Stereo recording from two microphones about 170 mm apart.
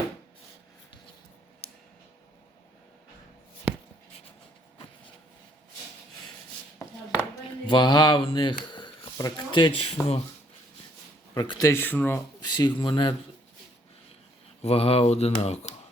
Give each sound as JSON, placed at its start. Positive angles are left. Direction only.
{"t": 6.7, "sound": "a sound", "side_deg": 15}
{"t": 7.7, "sound": "speech", "side_deg": 25}
{"t": 11.3, "sound": "speech", "side_deg": 20}
{"t": 12.4, "sound": "speech", "side_deg": 25}
{"t": 14.6, "sound": "speech", "side_deg": 35}